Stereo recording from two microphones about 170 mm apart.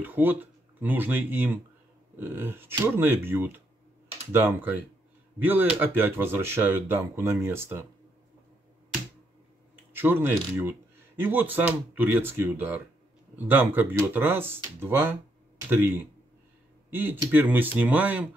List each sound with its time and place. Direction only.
0.0 s speech: 10° right (ahead or behind)
9.9 s speech: 10° right (ahead or behind)